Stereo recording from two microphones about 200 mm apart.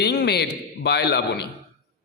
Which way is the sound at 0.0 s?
55° left (ahead or behind).